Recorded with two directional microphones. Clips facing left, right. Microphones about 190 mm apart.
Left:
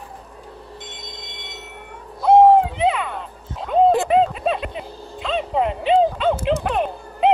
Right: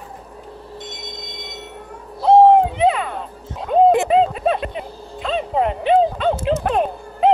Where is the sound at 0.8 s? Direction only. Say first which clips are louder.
Right 4 dB; 40° right (ahead or behind).